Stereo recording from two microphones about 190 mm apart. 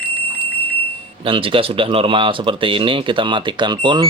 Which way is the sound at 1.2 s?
30° right (ahead or behind).